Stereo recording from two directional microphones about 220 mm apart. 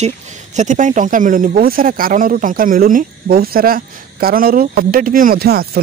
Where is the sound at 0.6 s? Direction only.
35° right (ahead or behind).